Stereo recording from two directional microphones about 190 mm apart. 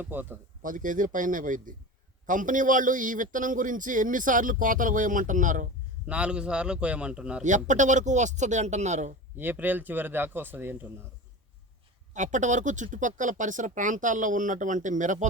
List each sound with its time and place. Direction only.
0.0 s a man's voice: 10° right (ahead or behind)
0.6 s a man's voice: 45° right (ahead or behind)
6.1 s a man's voice: 5° right (ahead or behind)
7.4 s speech: 40° right (ahead or behind)
9.4 s a man's voice: 10° right (ahead or behind)
12.1 s speech: 40° right (ahead or behind)